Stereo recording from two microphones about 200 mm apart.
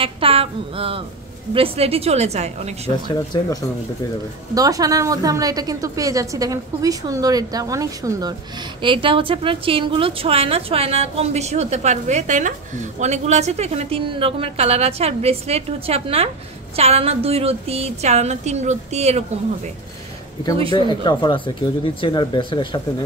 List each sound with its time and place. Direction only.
0.0 s a woman's voice: 30° right (ahead or behind)
3.3 s speech: 20° left (ahead or behind)
4.6 s a woman's voice: 15° right (ahead or behind); by 19.2 s 35° right (ahead or behind)
20.7 s speech: 25° left (ahead or behind)